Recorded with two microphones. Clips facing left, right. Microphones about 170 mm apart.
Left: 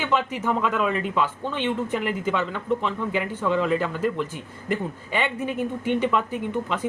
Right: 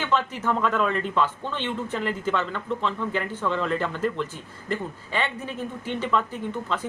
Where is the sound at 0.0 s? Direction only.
15° left (ahead or behind).